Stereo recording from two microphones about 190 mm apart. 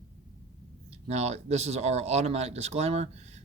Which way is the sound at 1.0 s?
35° right (ahead or behind).